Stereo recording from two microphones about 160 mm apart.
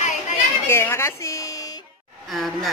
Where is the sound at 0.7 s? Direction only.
15° left (ahead or behind).